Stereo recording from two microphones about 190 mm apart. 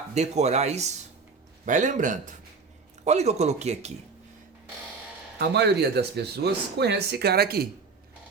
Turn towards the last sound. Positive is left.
turn(degrees=-55)  # may be behind; listen again after turning